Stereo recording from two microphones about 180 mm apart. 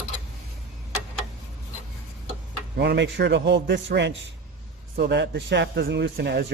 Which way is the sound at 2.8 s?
70° right (ahead or behind).